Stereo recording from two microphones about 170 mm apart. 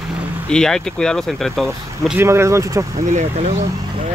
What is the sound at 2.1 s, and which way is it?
Speech, 15° right (ahead or behind).